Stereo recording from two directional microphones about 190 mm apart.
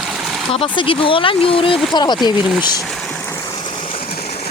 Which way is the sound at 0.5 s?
30° left (ahead or behind).